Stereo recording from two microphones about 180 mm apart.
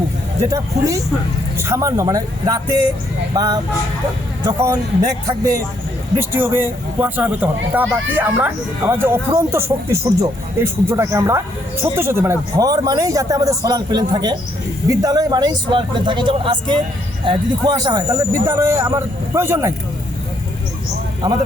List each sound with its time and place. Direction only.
1.5 s speech: 15° right (ahead or behind)
6.1 s speech: 15° right (ahead or behind)
21.2 s speech: 20° right (ahead or behind)